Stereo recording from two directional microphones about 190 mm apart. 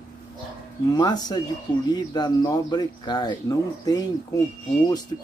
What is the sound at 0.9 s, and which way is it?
Speech, 20° left (ahead or behind).